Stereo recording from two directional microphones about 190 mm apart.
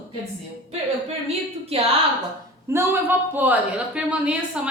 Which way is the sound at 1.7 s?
30° right (ahead or behind).